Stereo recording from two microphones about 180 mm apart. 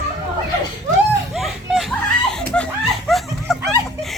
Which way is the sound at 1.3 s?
Centre (ahead or behind).